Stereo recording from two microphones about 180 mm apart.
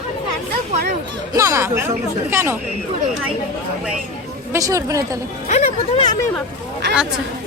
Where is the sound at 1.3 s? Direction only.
15° right (ahead or behind).